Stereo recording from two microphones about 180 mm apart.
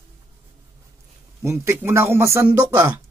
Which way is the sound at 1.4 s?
15° right (ahead or behind).